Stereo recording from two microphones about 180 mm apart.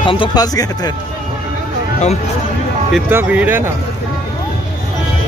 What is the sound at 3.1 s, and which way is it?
Speech, 10° right (ahead or behind).